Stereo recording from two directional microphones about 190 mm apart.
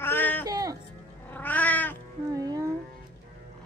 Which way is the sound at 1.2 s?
10° left (ahead or behind).